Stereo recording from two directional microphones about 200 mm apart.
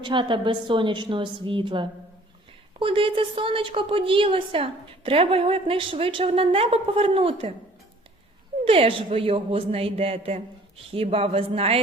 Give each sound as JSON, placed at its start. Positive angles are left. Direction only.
{"t": 0.0, "sound": "a woman's voice", "side_deg": -25}
{"t": 8.6, "sound": "a woman's voice", "side_deg": -30}